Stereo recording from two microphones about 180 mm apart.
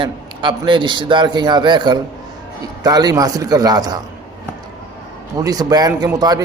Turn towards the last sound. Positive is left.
turn(degrees=-20)  # may be behind; listen again after turning